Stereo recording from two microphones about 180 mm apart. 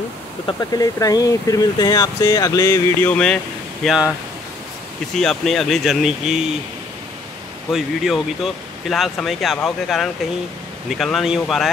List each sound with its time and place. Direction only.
0.5 s speech: 20° left (ahead or behind)
3.8 s speech: centre (ahead or behind)
5.1 s speech: 5° left (ahead or behind)
7.7 s speech: centre (ahead or behind)